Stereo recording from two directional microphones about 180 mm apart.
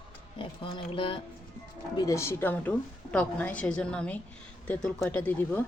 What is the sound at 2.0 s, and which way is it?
A woman's voice, 15° left (ahead or behind).